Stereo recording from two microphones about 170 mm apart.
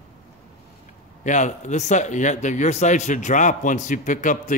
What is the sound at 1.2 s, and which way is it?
Speech, 45° left (ahead or behind).